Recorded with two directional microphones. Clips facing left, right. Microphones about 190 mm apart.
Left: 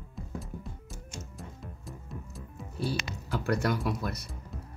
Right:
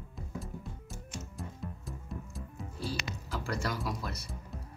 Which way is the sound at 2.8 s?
65° left (ahead or behind).